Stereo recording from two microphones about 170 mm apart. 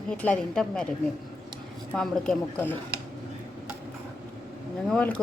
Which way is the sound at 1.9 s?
5° left (ahead or behind).